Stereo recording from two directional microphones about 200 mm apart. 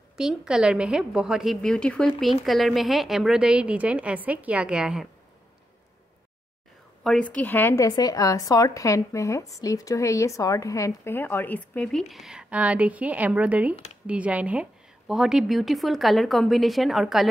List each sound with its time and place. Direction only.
0.2 s a woman's voice: 5° right (ahead or behind)
7.0 s a sound: centre (ahead or behind)
7.3 s a woman's voice: 10° left (ahead or behind)